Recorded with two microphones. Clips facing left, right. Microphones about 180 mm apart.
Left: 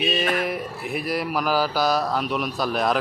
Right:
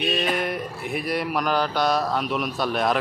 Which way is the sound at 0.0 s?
Centre (ahead or behind).